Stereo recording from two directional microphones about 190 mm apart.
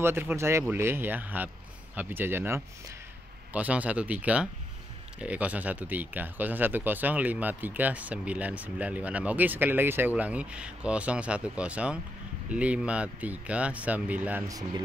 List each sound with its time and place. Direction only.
0.0 s speech: 10° right (ahead or behind)
14.5 s speech: 20° right (ahead or behind)